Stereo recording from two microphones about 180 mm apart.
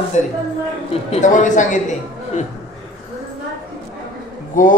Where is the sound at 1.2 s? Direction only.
45° left (ahead or behind).